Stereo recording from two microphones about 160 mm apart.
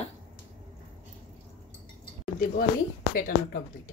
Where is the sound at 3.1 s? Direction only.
60° left (ahead or behind).